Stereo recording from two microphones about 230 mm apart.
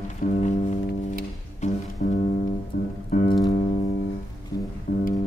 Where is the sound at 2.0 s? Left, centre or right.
Left.